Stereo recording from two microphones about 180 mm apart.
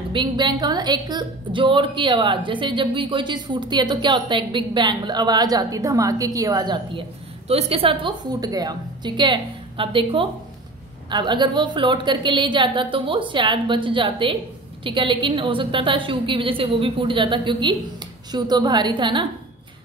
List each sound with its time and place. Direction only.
0.1 s a woman's voice: 25° right (ahead or behind)